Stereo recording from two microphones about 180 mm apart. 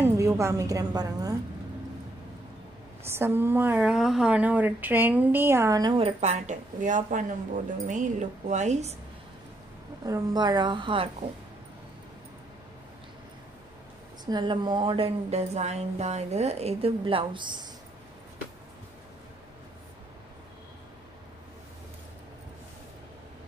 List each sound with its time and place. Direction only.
0.0 s a woman's voice: 15° right (ahead or behind)
3.1 s speech: 10° right (ahead or behind); by 8.9 s 40° right (ahead or behind)
10.0 s a woman's voice: 20° right (ahead or behind)
14.2 s speech: 25° right (ahead or behind)